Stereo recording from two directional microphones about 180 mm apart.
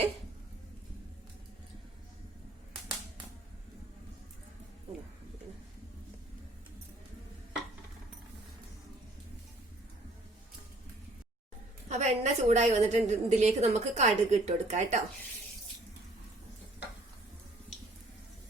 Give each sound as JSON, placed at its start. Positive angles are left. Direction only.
{"t": 11.9, "sound": "a woman's voice", "side_deg": -40}